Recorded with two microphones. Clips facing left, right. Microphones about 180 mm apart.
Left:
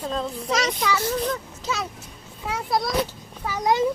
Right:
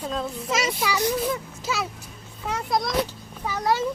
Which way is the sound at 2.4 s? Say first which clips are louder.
Left 1 dB; centre (ahead or behind).